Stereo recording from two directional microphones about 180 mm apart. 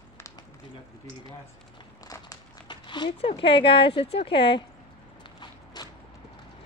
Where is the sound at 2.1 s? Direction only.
20° left (ahead or behind).